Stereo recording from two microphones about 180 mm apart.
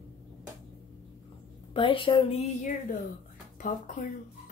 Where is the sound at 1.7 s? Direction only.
30° left (ahead or behind).